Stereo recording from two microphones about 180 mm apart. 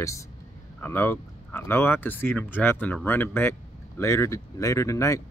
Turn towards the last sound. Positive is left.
turn(degrees=15)  # may be behind; listen again after turning